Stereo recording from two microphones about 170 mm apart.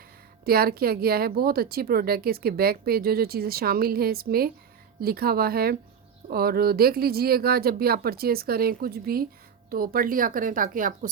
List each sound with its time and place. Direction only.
0.4 s speech: 60° right (ahead or behind)